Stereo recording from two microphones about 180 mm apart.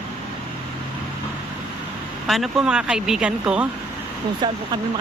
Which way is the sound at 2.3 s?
Centre (ahead or behind).